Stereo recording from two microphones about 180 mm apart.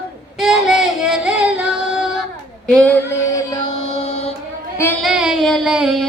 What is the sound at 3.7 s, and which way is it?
Mantra, 35° left (ahead or behind).